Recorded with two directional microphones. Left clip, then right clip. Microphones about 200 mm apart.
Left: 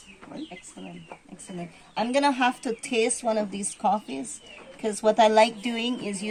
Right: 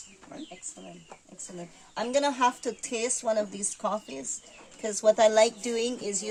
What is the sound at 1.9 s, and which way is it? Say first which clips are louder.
Speech: left 3 dB; 25° right (ahead or behind).